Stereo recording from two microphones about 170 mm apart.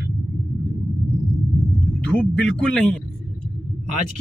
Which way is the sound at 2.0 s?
5° left (ahead or behind).